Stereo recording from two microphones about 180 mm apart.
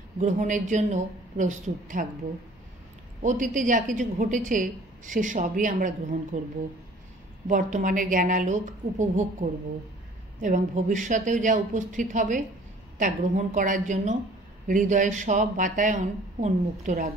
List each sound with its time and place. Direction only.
0.2 s a woman's voice: 45° right (ahead or behind)
3.2 s a woman's voice: 45° right (ahead or behind)
7.4 s a woman's voice: 45° right (ahead or behind)